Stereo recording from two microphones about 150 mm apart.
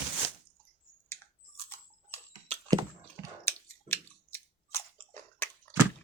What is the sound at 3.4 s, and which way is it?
Squish, 15° left (ahead or behind).